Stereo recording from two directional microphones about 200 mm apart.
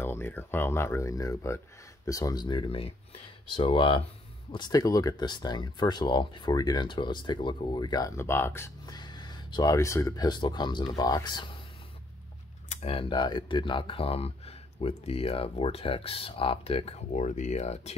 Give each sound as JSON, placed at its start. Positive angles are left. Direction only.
{"t": 0.0, "sound": "speech", "side_deg": 10}
{"t": 12.6, "sound": "speech", "side_deg": 30}